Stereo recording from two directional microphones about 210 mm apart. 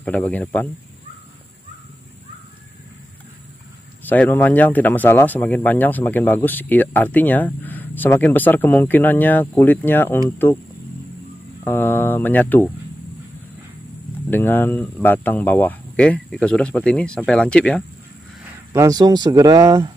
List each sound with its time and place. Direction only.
0.0 s speech: 5° left (ahead or behind)
4.0 s speech: 10° left (ahead or behind)
11.6 s speech: 10° left (ahead or behind)
14.3 s speech: 10° left (ahead or behind)
18.7 s speech: 15° right (ahead or behind)